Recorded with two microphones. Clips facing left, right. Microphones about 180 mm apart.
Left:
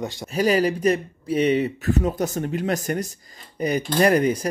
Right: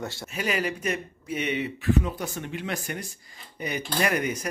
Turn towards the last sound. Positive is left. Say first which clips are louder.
# left 8 dB
turn(degrees=35)  # may be behind; listen again after turning